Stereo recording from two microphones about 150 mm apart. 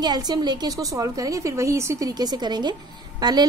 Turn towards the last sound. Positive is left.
turn(degrees=-30)  # may be behind; listen again after turning